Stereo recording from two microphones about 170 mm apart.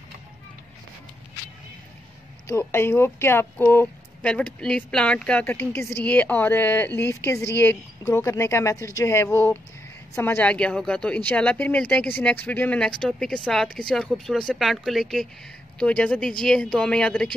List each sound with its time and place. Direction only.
2.4 s speech: 15° left (ahead or behind)